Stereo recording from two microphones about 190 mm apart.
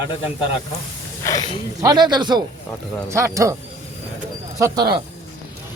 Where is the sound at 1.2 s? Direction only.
15° left (ahead or behind).